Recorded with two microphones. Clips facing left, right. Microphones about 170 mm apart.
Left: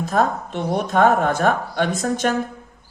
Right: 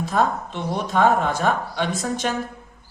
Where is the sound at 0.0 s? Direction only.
45° left (ahead or behind).